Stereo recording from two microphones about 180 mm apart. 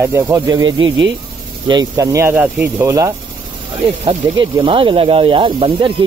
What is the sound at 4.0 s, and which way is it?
Speech, 30° right (ahead or behind).